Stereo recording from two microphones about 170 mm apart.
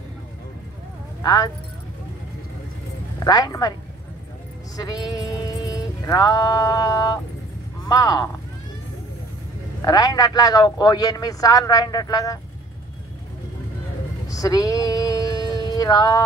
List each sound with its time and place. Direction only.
1.2 s speech: 20° left (ahead or behind)
3.2 s a man's voice: 20° left (ahead or behind)
4.7 s a man's voice: 25° left (ahead or behind)
9.8 s a man's voice: 20° left (ahead or behind)
14.2 s speech: 20° left (ahead or behind)